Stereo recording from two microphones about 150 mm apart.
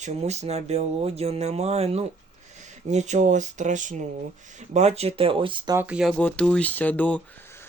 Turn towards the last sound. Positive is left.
turn(degrees=10)  # may be behind; listen again after turning